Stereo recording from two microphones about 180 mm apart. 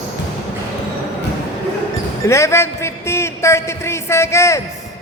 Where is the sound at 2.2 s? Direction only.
15° left (ahead or behind).